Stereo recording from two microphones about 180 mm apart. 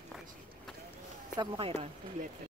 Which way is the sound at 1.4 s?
30° right (ahead or behind).